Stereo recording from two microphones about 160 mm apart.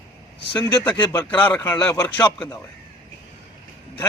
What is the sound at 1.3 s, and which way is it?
A man's voice, 10° left (ahead or behind).